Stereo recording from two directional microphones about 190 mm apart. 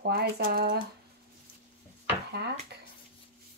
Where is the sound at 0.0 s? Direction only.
55° right (ahead or behind).